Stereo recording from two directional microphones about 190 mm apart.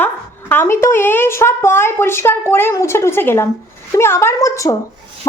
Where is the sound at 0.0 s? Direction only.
10° left (ahead or behind).